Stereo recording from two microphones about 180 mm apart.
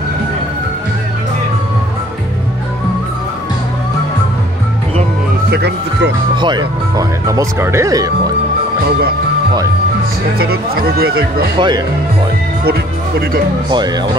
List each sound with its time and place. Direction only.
5.5 s music: 70° right (ahead or behind)
6.3 s speech: 25° right (ahead or behind)
10.4 s speech: 60° right (ahead or behind)
11.5 s speech: 25° right (ahead or behind)
13.7 s speech: 25° right (ahead or behind)